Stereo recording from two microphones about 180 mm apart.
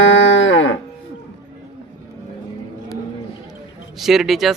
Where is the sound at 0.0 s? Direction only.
90° left.